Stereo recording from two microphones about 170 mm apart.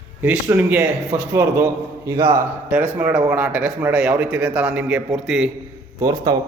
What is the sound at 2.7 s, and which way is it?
Speech, 10° right (ahead or behind).